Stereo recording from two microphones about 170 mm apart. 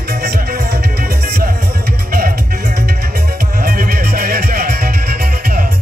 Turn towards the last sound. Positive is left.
turn(degrees=-60)  # may be behind; listen again after turning